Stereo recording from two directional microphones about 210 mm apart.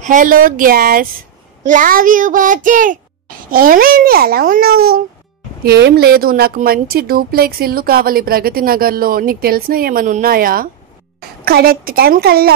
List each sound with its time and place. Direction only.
0.0 s a child's voice: 40° right (ahead or behind)